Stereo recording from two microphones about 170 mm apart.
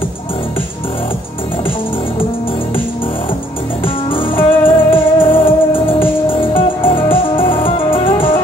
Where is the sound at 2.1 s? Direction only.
30° left (ahead or behind).